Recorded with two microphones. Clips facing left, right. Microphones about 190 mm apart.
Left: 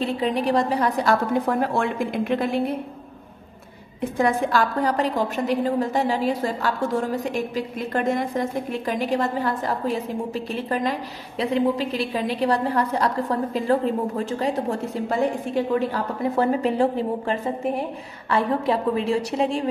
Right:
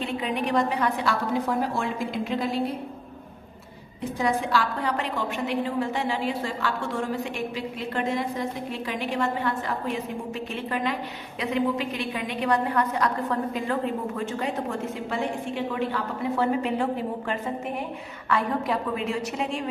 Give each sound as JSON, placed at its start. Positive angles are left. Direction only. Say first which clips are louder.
{"t": 0.0, "sound": "a woman's voice", "louder": "left 5 dB", "side_deg": 35}
{"t": 4.2, "sound": "a woman's voice", "louder": "left 4 dB", "side_deg": 50}